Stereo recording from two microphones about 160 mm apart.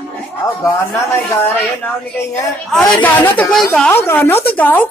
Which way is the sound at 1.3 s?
15° left (ahead or behind).